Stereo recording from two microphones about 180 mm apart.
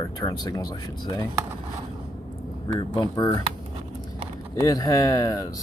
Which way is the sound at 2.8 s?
20° left (ahead or behind).